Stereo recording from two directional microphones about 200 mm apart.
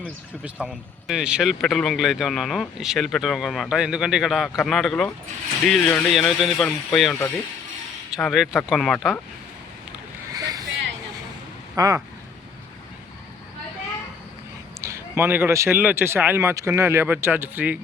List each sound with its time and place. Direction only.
0.4 s speech: 5° right (ahead or behind)
10.3 s vehicle: 20° right (ahead or behind)
11.7 s speech: 15° right (ahead or behind)
14.8 s a man's voice: 15° right (ahead or behind)